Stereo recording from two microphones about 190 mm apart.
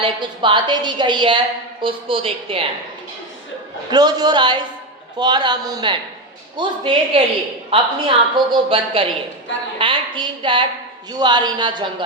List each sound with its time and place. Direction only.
0.0 s a woman's voice: 25° right (ahead or behind)
3.9 s a woman's voice: 20° right (ahead or behind)